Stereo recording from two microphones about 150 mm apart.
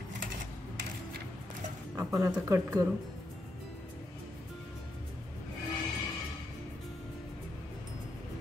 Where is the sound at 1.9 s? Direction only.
15° right (ahead or behind).